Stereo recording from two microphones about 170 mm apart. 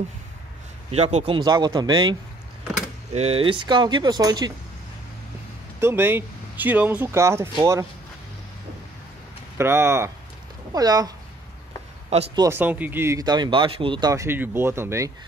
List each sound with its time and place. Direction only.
0.9 s speech: 35° right (ahead or behind)
3.2 s speech: 35° right (ahead or behind)
5.8 s speech: 15° right (ahead or behind)
9.6 s speech: 15° right (ahead or behind)
12.4 s speech: 15° right (ahead or behind)